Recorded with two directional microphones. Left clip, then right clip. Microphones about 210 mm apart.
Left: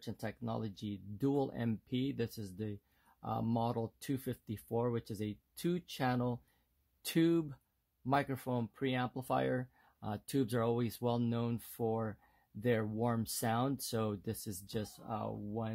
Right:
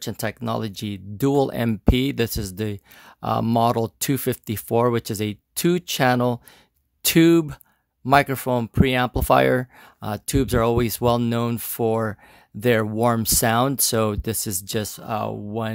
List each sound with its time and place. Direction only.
0.0 s speech: 45° right (ahead or behind)